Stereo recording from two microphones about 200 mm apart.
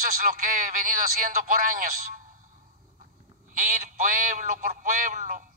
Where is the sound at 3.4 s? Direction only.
40° right (ahead or behind).